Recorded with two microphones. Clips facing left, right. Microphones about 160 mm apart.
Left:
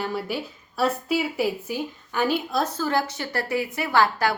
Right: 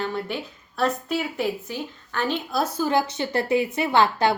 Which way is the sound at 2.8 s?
20° right (ahead or behind).